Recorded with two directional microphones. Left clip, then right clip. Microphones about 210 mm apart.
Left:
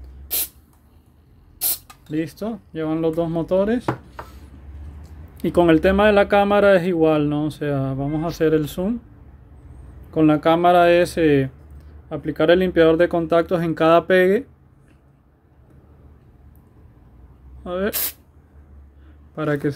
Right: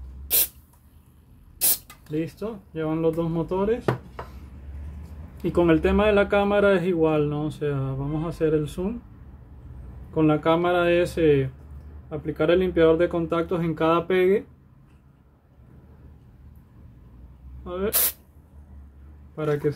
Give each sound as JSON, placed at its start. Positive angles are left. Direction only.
{"t": 2.1, "sound": "speech", "side_deg": 45}
{"t": 5.4, "sound": "speech", "side_deg": 45}
{"t": 10.1, "sound": "speech", "side_deg": 45}
{"t": 19.3, "sound": "speech", "side_deg": 45}